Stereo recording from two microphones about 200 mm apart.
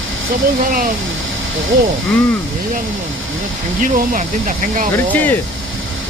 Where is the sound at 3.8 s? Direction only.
40° right (ahead or behind).